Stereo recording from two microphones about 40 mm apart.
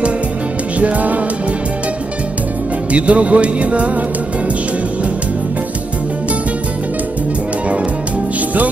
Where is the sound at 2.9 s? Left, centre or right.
Right.